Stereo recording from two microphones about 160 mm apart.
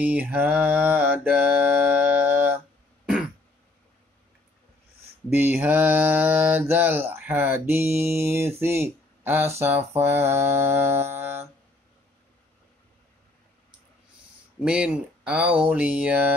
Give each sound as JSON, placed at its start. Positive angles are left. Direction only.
{"t": 0.0, "sound": "mantra", "side_deg": -10}
{"t": 5.3, "sound": "mantra", "side_deg": -10}
{"t": 14.6, "sound": "mantra", "side_deg": -5}